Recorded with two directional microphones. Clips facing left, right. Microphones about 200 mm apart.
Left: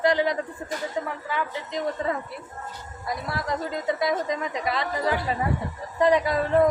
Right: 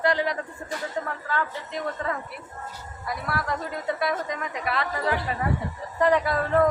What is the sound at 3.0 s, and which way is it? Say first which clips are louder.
A woman's voice: even; 20° left (ahead or behind).